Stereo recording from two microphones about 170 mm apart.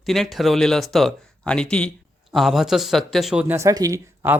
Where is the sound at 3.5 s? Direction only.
20° right (ahead or behind).